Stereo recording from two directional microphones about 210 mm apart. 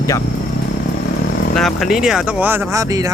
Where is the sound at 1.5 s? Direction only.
Centre (ahead or behind); by 3.1 s 15° right (ahead or behind).